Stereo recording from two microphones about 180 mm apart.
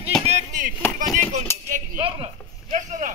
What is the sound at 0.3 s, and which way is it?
Chop, 45° right (ahead or behind).